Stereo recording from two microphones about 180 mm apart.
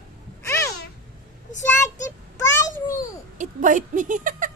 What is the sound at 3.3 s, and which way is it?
Speech, 45° right (ahead or behind).